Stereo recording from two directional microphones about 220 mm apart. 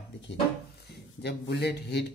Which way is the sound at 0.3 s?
45° left (ahead or behind).